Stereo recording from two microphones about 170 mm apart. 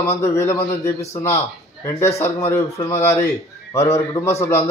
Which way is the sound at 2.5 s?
15° left (ahead or behind).